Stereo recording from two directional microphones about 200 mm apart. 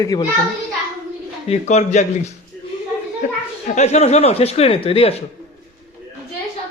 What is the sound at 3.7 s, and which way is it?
Speech, 35° left (ahead or behind).